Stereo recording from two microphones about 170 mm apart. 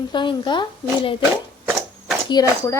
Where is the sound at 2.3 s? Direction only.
20° left (ahead or behind).